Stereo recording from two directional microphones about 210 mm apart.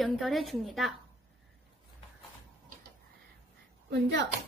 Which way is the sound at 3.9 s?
55° right (ahead or behind).